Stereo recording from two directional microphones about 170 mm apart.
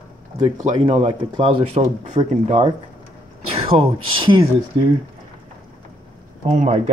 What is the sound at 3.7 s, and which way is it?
Speech, 30° right (ahead or behind).